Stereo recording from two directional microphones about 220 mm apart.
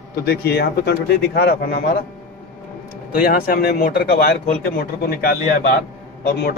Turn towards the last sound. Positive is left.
turn(degrees=45)  # may be behind; listen again after turning